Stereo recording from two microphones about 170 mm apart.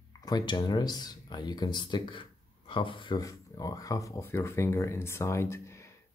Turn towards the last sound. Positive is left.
turn(degrees=15)  # may be behind; listen again after turning